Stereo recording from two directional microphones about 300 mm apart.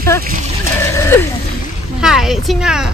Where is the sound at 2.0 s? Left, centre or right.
Centre.